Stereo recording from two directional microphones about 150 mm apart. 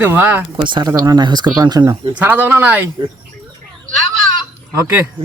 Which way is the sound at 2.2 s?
10° right (ahead or behind).